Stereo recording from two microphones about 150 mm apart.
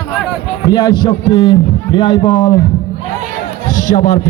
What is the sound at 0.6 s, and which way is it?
A man's voice, 25° left (ahead or behind).